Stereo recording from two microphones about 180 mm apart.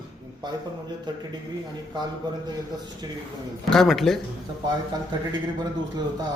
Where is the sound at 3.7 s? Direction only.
Centre (ahead or behind).